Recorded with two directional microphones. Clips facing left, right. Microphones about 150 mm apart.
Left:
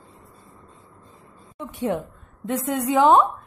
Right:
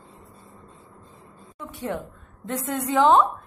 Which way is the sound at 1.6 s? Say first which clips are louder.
Left 5 dB; 20° left (ahead or behind).